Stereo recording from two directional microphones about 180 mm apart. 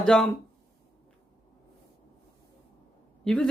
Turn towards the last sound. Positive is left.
turn(degrees=5)  # may be behind; listen again after turning